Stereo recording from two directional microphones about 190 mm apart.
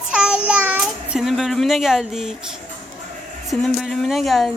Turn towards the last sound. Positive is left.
turn(degrees=0)  # may be behind; listen again after turning